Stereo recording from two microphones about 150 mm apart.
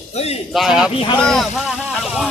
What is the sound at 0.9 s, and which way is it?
Speech, 40° left (ahead or behind).